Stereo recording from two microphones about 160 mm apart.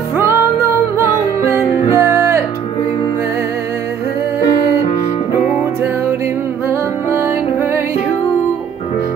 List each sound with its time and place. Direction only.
1.9 s music: 15° right (ahead or behind)
6.7 s music: 15° right (ahead or behind)